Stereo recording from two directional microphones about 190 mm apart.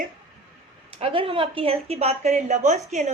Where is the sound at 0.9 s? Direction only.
30° right (ahead or behind).